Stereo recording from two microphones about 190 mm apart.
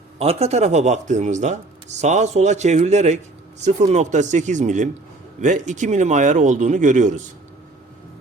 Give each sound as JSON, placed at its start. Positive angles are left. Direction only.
{"t": 0.2, "sound": "speech", "side_deg": -30}